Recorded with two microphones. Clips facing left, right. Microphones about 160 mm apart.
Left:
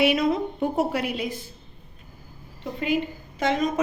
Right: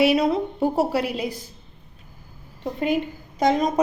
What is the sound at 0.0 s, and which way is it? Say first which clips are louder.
A woman's voice: right 2 dB; 35° right (ahead or behind).